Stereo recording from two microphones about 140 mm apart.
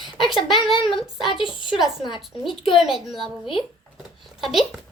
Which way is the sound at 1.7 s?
5° right (ahead or behind).